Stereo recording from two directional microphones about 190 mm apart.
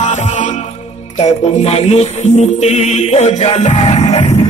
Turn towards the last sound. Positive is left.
turn(degrees=35)  # may be behind; listen again after turning